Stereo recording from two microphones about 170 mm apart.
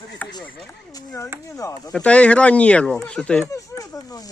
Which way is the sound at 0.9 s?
20° left (ahead or behind).